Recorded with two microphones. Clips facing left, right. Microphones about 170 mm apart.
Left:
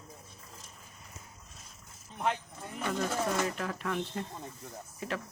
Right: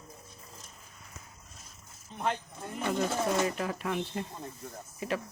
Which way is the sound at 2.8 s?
20° right (ahead or behind).